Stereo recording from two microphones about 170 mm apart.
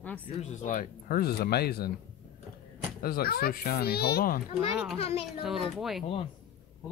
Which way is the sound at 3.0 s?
60° left (ahead or behind).